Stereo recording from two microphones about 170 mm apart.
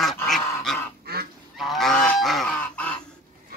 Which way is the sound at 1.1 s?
70° right (ahead or behind).